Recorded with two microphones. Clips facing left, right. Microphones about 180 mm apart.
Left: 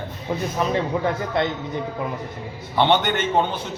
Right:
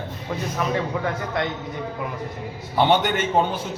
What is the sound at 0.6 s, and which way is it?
Speech, 30° left (ahead or behind).